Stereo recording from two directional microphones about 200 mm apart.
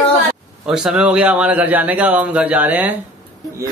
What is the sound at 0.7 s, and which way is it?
A man's voice, 5° right (ahead or behind).